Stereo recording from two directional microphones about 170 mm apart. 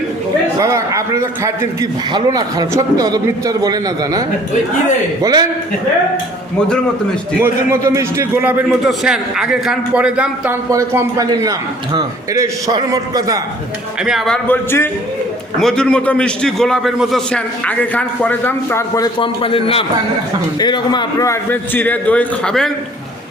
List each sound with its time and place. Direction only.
0.6 s a man's voice: 20° right (ahead or behind)
7.4 s a man's voice: 15° right (ahead or behind)
14.0 s a man's voice: centre (ahead or behind)
14.4 s a man's voice: 10° left (ahead or behind)